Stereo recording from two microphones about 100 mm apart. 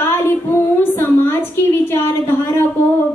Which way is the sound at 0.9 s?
20° left (ahead or behind).